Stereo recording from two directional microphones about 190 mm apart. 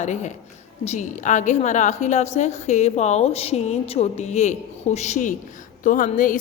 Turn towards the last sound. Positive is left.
turn(degrees=45)  # may be behind; listen again after turning